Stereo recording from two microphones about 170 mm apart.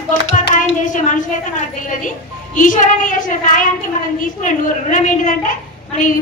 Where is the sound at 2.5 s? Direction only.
50° left (ahead or behind).